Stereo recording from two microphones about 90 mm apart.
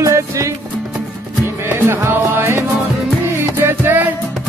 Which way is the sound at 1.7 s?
25° right (ahead or behind).